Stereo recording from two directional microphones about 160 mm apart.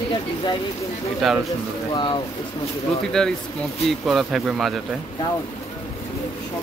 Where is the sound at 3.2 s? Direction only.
5° left (ahead or behind).